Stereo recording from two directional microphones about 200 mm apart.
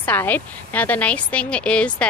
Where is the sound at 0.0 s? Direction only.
10° left (ahead or behind).